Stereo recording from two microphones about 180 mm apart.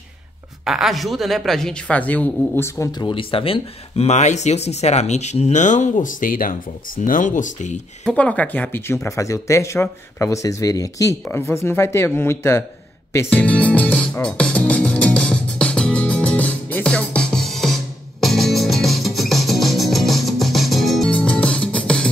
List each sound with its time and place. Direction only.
0.7 s a woman's voice: centre (ahead or behind); by 7.7 s 45° left (ahead or behind)
8.0 s speech: 5° left (ahead or behind)
13.1 s music: 10° left (ahead or behind)